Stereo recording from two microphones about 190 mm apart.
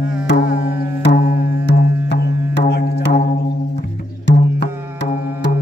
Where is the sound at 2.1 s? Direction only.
60° left (ahead or behind).